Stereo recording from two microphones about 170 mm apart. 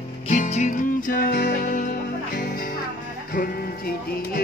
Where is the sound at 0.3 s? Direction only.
45° left (ahead or behind).